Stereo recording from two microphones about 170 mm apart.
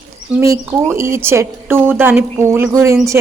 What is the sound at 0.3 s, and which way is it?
A woman's voice, 20° right (ahead or behind).